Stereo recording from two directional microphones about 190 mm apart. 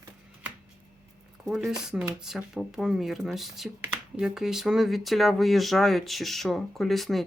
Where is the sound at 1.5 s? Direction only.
Centre (ahead or behind).